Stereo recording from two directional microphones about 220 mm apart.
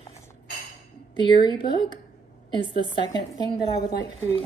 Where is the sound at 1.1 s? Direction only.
20° left (ahead or behind).